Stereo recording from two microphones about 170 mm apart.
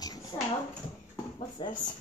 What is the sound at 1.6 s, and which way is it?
Speech, 25° left (ahead or behind).